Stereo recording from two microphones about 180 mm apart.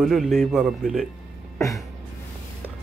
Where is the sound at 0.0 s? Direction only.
Centre (ahead or behind).